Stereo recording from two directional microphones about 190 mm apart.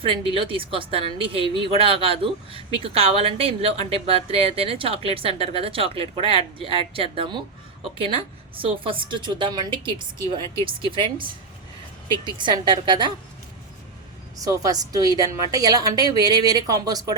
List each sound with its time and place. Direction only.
0.0 s a woman's voice: 30° right (ahead or behind)
12.2 s a woman's voice: 25° right (ahead or behind)
14.3 s a woman's voice: 20° right (ahead or behind)